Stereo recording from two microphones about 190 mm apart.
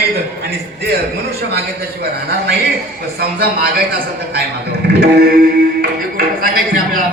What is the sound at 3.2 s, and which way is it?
A man's voice, 55° right (ahead or behind).